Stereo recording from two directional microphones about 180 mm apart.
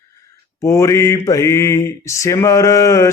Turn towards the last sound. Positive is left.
turn(degrees=15)  # may be behind; listen again after turning